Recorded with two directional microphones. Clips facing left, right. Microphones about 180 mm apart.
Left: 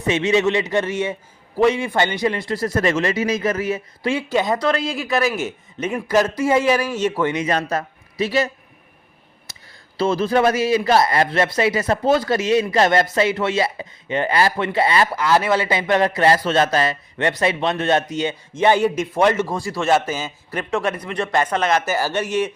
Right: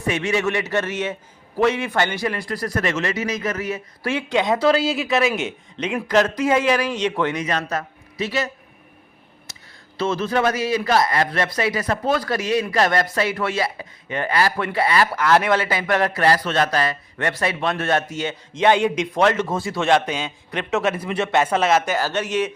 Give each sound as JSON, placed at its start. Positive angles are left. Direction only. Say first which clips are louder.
{"t": 0.1, "sound": "a man's voice", "louder": "left 4 dB", "side_deg": 20}
{"t": 4.3, "sound": "a man's voice", "louder": "right 3 dB", "side_deg": 0}
{"t": 7.3, "sound": "a man's voice", "louder": "left 3 dB", "side_deg": 30}
{"t": 10.0, "sound": "a man's voice", "louder": "left 3 dB", "side_deg": 35}
{"t": 15.1, "sound": "a man's voice", "louder": "even", "side_deg": 10}
{"t": 15.7, "sound": "a man's voice", "louder": "left 3 dB", "side_deg": 20}
{"t": 19.5, "sound": "a man's voice", "louder": "even", "side_deg": 0}
{"t": 21.8, "sound": "a man's voice", "louder": "left 1 dB", "side_deg": 10}